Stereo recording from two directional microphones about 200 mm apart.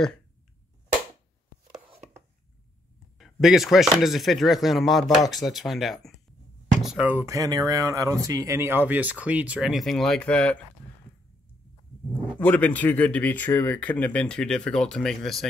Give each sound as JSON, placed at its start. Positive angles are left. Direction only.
{"t": 1.9, "sound": "chopping", "side_deg": -30}
{"t": 3.2, "sound": "speech", "side_deg": 0}
{"t": 12.1, "sound": "speech", "side_deg": 10}